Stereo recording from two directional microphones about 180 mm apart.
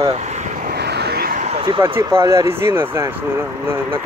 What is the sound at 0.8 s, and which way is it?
Vehicle, 65° right (ahead or behind).